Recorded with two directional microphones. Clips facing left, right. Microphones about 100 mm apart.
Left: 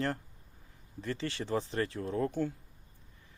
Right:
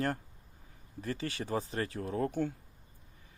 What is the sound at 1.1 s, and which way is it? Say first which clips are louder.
Speech: left 1 dB; 10° right (ahead or behind).